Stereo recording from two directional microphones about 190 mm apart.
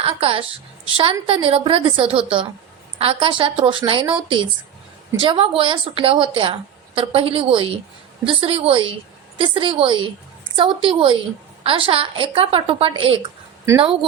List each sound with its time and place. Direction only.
0.0 s a woman's voice: 30° right (ahead or behind)